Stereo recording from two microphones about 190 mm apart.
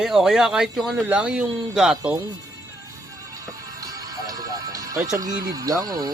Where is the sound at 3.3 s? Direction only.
20° right (ahead or behind).